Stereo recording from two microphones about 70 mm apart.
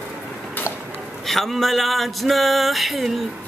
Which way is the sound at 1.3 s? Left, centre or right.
Centre.